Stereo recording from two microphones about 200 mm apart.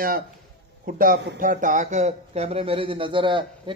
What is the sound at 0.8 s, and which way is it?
Speech, 45° right (ahead or behind).